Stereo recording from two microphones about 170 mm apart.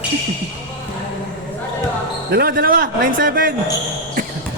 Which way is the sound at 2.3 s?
65° right (ahead or behind).